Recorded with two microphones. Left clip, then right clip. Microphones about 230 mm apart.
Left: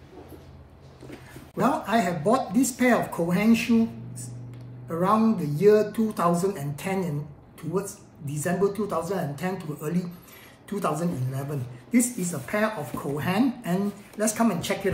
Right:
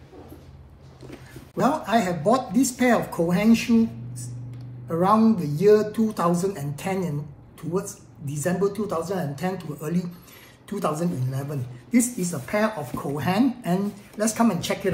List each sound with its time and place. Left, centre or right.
1.6 s speech: centre
4.8 s speech: centre
8.3 s speech: centre